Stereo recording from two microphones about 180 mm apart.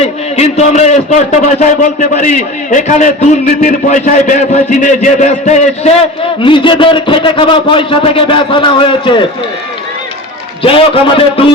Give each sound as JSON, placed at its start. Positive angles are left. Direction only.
{"t": 0.0, "sound": "a man's voice", "side_deg": 35}
{"t": 6.4, "sound": "a man's voice", "side_deg": 30}
{"t": 10.6, "sound": "a man's voice", "side_deg": 30}